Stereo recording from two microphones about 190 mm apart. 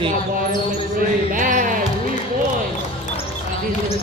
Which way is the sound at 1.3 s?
45° right (ahead or behind).